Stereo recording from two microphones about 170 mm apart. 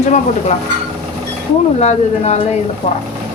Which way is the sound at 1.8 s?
40° left (ahead or behind).